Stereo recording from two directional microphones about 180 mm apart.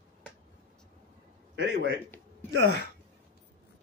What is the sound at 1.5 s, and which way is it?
Speech, 90° right.